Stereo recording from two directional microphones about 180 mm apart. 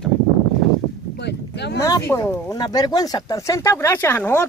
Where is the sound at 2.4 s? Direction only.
25° left (ahead or behind).